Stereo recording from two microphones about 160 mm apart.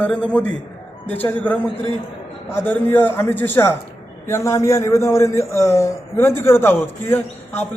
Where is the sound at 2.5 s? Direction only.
15° left (ahead or behind).